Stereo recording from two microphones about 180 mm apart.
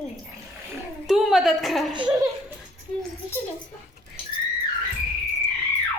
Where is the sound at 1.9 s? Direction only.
25° right (ahead or behind).